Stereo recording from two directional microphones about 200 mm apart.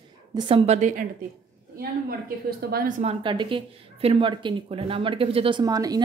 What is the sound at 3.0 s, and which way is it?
A woman's voice, 25° right (ahead or behind).